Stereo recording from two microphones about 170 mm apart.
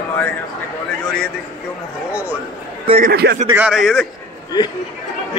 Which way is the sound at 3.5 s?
5° right (ahead or behind).